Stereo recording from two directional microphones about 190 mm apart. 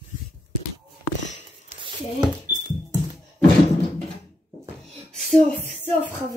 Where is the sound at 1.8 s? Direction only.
25° right (ahead or behind).